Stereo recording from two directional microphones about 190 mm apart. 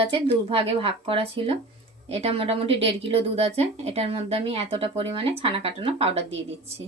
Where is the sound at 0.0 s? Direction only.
30° right (ahead or behind).